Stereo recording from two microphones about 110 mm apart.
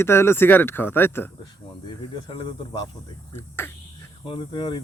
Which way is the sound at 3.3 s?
20° left (ahead or behind).